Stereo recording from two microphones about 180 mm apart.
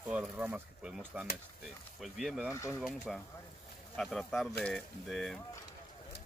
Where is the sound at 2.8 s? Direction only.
Centre (ahead or behind).